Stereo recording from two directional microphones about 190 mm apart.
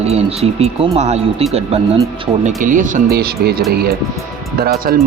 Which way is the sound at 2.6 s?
45° right (ahead or behind).